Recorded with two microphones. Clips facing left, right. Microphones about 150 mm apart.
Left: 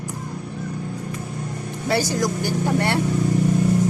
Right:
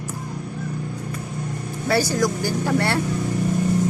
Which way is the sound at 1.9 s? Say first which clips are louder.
Right 1 dB; 20° left (ahead or behind).